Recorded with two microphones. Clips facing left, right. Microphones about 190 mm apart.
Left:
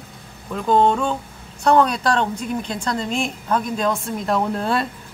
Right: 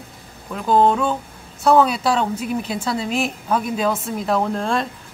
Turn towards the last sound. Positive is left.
turn(degrees=5)  # may be behind; listen again after turning